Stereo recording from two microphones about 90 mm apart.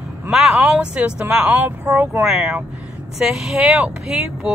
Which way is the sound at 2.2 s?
5° right (ahead or behind).